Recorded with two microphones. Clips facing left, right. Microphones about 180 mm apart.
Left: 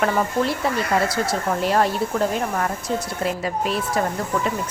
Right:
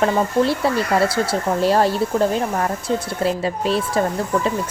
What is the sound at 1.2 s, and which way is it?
Speech, 30° right (ahead or behind).